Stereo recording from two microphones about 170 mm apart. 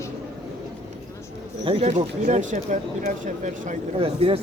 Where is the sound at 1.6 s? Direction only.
35° right (ahead or behind).